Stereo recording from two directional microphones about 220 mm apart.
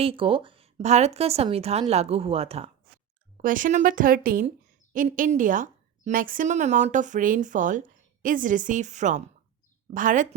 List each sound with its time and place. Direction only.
0.0 s a woman's voice: 25° right (ahead or behind)
3.3 s a woman's voice: 35° right (ahead or behind)